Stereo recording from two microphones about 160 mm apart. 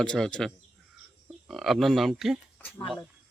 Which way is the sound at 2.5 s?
10° left (ahead or behind).